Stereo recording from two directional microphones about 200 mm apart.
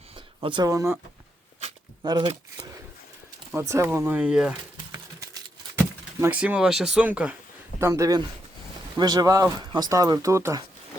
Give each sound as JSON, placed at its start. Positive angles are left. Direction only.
{"t": 0.3, "sound": "speech", "side_deg": -25}
{"t": 2.0, "sound": "speech", "side_deg": -20}
{"t": 5.7, "sound": "speech", "side_deg": -10}